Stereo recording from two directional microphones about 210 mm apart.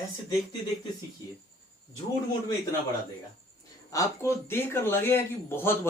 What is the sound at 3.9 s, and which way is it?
Speech, 15° left (ahead or behind).